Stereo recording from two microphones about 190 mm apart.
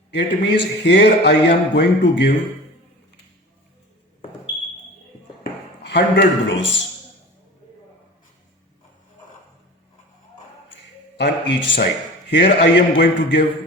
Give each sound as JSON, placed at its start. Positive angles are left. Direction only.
{"t": 0.1, "sound": "a man's voice", "side_deg": 65}
{"t": 5.8, "sound": "a man's voice", "side_deg": 65}
{"t": 11.2, "sound": "a man's voice", "side_deg": 70}